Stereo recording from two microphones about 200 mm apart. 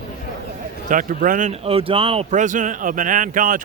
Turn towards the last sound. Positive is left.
turn(degrees=-40)  # may be behind; listen again after turning